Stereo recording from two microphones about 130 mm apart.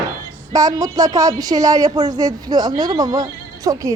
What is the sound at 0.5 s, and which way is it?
Speech, 30° right (ahead or behind).